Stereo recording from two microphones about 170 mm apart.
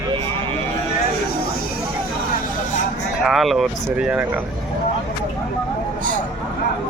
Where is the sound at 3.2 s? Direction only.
Centre (ahead or behind).